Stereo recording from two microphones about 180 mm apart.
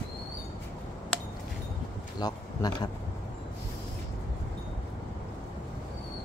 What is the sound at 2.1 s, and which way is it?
Speech, 20° left (ahead or behind).